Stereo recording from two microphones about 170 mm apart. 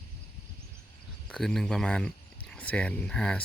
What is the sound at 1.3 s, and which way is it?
Speech, 5° left (ahead or behind).